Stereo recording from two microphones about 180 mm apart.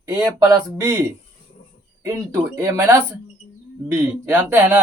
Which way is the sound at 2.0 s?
15° right (ahead or behind).